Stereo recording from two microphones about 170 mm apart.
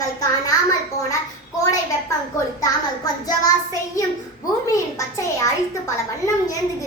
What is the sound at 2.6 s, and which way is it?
Speech, 20° left (ahead or behind).